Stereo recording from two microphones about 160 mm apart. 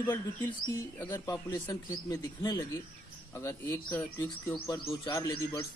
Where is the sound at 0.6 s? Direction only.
25° left (ahead or behind).